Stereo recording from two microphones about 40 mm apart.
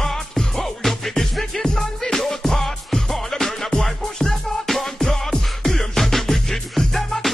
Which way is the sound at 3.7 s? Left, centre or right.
Centre.